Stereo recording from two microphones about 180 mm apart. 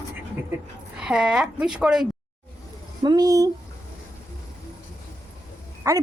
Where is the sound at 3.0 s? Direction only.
20° right (ahead or behind).